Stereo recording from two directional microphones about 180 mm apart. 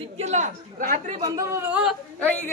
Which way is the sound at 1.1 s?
20° right (ahead or behind).